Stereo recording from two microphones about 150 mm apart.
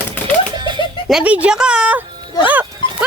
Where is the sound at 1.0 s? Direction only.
5° right (ahead or behind).